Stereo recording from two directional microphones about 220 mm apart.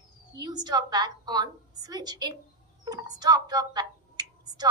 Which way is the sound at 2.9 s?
15° right (ahead or behind).